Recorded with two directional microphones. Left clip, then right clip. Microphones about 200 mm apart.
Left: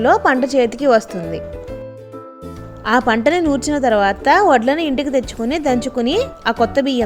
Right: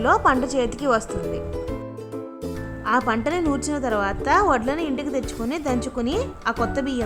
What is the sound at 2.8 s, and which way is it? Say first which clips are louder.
A woman's voice: left 7 dB; 15° left (ahead or behind).